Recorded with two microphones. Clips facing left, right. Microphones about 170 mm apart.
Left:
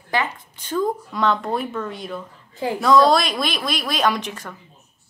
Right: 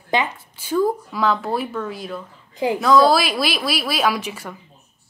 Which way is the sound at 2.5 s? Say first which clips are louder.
Right 3 dB; 15° right (ahead or behind).